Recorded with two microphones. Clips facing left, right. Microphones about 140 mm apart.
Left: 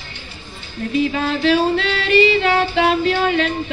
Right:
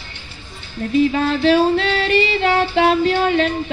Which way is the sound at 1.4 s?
40° right (ahead or behind).